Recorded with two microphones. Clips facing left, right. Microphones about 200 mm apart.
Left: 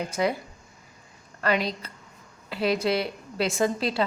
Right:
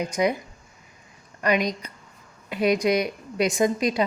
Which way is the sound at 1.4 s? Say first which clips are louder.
Right 3 dB; 15° right (ahead or behind).